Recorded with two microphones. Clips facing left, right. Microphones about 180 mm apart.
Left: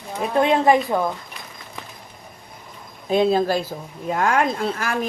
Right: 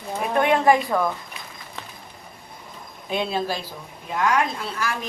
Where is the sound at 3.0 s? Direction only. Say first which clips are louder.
Left 7 dB; 40° left (ahead or behind).